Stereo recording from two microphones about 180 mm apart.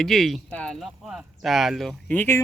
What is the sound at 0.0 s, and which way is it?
Speech, centre (ahead or behind).